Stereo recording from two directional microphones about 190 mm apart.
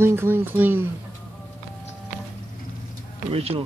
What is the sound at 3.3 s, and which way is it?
Speech, 30° right (ahead or behind).